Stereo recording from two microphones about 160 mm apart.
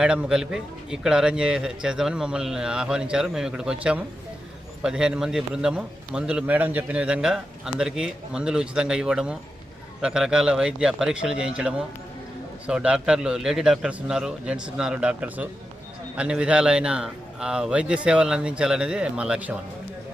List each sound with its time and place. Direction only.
0.0 s a man's voice: 5° right (ahead or behind)